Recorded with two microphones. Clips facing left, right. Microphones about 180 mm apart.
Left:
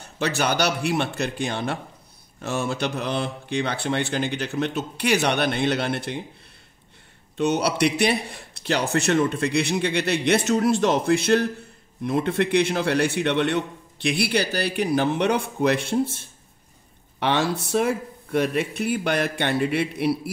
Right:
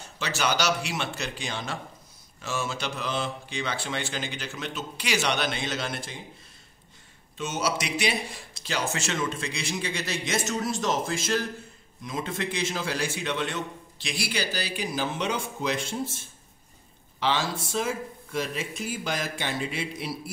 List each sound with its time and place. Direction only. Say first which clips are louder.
0.0 s a man's voice: left 5 dB; 60° left (ahead or behind)
7.3 s a man's voice: left 8 dB; 60° left (ahead or behind)